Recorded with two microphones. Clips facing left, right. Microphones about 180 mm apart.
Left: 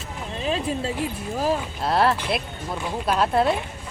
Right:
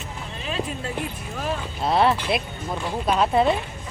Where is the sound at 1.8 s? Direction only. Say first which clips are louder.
Right 3 dB; centre (ahead or behind).